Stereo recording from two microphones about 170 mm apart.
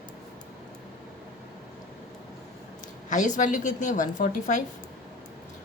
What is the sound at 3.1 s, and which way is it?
A woman's voice, 45° left (ahead or behind).